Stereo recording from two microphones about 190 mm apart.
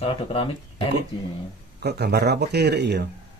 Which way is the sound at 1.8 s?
60° right (ahead or behind).